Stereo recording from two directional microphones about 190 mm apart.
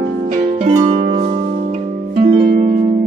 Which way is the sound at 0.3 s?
40° right (ahead or behind).